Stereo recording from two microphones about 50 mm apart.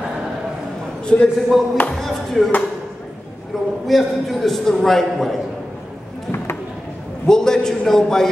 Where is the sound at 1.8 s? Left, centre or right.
Left.